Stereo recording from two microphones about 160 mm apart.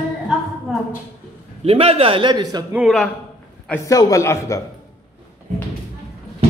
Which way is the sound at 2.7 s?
Centre (ahead or behind).